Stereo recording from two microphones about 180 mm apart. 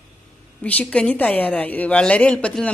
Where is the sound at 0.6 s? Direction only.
10° left (ahead or behind).